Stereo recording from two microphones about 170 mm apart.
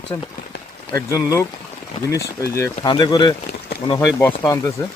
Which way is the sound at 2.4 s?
15° left (ahead or behind).